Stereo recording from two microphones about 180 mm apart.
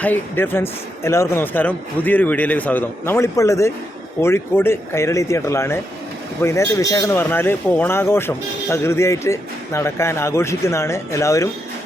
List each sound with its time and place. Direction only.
0.0 s a man's voice: 10° left (ahead or behind)